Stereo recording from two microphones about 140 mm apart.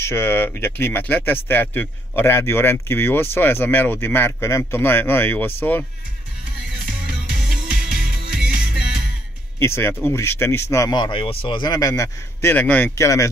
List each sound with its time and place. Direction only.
0.0 s speech: 15° left (ahead or behind)
7.9 s music: 5° right (ahead or behind)
9.6 s speech: 20° left (ahead or behind)